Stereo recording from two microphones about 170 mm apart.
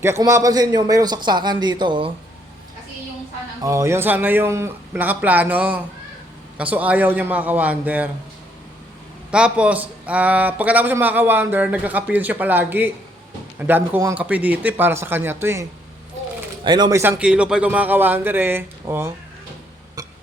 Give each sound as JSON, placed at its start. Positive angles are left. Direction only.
{"t": 0.0, "sound": "a man's voice", "side_deg": -15}
{"t": 3.6, "sound": "a man's voice", "side_deg": -20}
{"t": 9.3, "sound": "a man's voice", "side_deg": -5}
{"t": 16.6, "sound": "a man's voice", "side_deg": -25}
{"t": 17.0, "sound": "a man's voice", "side_deg": -10}